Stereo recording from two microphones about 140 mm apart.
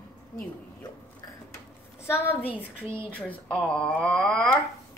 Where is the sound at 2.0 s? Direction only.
15° left (ahead or behind).